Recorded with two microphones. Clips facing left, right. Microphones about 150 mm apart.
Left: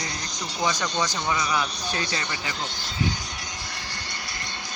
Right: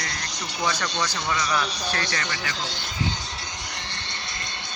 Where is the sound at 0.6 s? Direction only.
15° left (ahead or behind).